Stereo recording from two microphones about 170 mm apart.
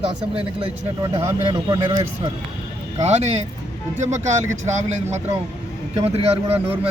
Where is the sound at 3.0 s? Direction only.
40° right (ahead or behind).